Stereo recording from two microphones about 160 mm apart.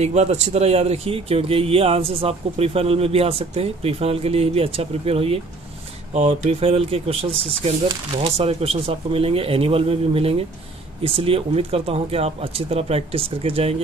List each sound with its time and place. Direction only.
0.0 s speech: 45° right (ahead or behind)